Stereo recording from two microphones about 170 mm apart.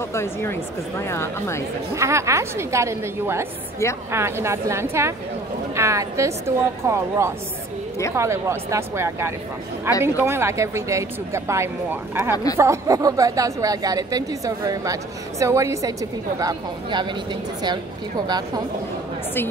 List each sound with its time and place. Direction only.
0.1 s speech: 15° left (ahead or behind)
2.0 s a woman's voice: 15° right (ahead or behind)